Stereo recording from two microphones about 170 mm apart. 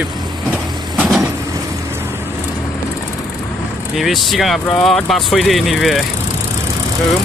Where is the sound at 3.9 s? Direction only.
Centre (ahead or behind).